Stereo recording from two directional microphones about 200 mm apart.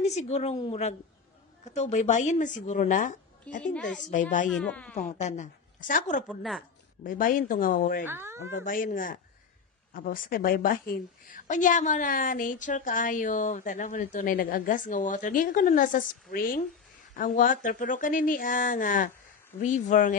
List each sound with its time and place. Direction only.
0.0 s a woman's voice: 35° left (ahead or behind)
3.6 s speech: 5° left (ahead or behind)
4.0 s a woman's voice: 40° left (ahead or behind)
4.5 s speech: 5° left (ahead or behind)
4.9 s a woman's voice: 35° left (ahead or behind)
6.2 s speech: centre (ahead or behind)
7.0 s speech: 45° left (ahead or behind)
8.0 s speech: 10° right (ahead or behind)
8.5 s a woman's voice: 40° left (ahead or behind)